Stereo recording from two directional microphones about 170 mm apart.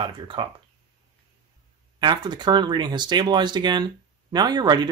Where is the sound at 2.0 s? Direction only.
25° right (ahead or behind).